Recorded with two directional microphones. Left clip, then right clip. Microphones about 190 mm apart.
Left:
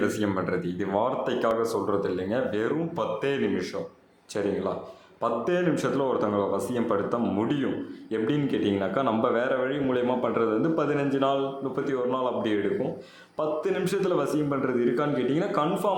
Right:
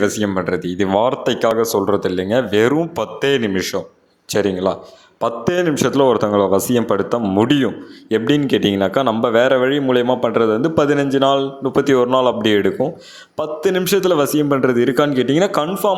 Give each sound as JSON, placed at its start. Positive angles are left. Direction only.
{"t": 0.3, "sound": "speech", "side_deg": -30}